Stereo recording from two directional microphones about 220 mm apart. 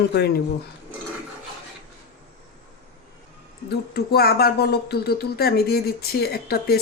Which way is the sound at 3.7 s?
45° left (ahead or behind).